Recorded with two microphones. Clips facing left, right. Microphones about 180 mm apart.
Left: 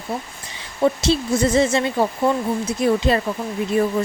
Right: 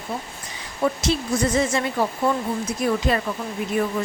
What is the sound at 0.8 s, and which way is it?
Speech, 25° left (ahead or behind).